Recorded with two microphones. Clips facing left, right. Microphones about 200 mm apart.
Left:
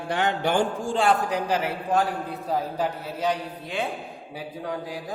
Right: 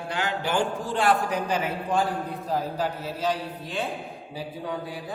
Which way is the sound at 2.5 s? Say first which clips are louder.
Left 1 dB; 10° left (ahead or behind).